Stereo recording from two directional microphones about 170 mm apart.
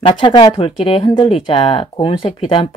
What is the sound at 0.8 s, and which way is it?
Speech, 30° left (ahead or behind).